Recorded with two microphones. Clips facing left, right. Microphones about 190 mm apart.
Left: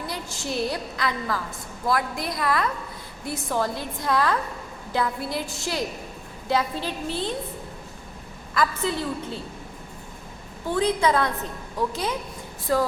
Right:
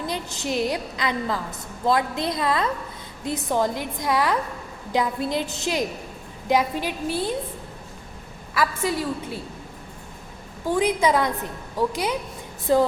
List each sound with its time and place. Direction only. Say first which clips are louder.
0.1 s a woman's voice: right 3 dB; 20° right (ahead or behind)
8.5 s a woman's voice: right 1 dB; 10° right (ahead or behind)
10.7 s a woman's voice: right 1 dB; 15° right (ahead or behind)